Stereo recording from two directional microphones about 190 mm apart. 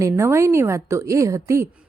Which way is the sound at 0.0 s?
15° right (ahead or behind).